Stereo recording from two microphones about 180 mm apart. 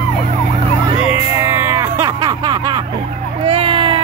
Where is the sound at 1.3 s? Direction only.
15° right (ahead or behind).